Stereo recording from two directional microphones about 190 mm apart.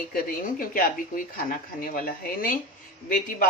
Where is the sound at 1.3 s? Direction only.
50° left (ahead or behind).